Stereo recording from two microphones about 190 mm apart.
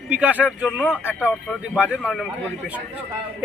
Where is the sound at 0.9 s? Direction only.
10° left (ahead or behind).